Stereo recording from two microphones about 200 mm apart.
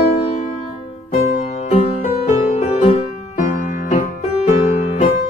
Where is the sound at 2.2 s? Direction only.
35° left (ahead or behind).